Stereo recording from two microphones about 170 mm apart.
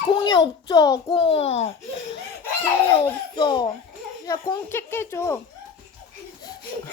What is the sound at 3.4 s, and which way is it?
A child's voice, 25° left (ahead or behind).